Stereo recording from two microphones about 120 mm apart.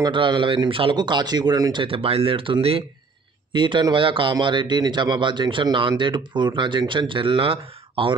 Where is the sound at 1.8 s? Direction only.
50° right (ahead or behind).